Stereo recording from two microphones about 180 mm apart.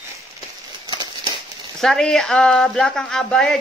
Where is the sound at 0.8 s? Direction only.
25° right (ahead or behind).